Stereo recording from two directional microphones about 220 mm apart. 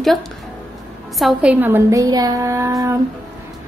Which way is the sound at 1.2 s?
5° right (ahead or behind).